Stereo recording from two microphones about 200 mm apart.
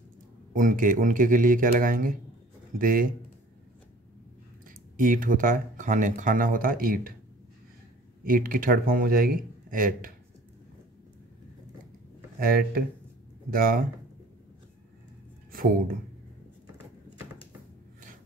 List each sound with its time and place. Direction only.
0.5 s speech: 40° right (ahead or behind)
4.6 s speech: 40° right (ahead or behind)
8.2 s speech: 45° right (ahead or behind)
12.4 s speech: 45° right (ahead or behind)
15.5 s speech: 45° right (ahead or behind)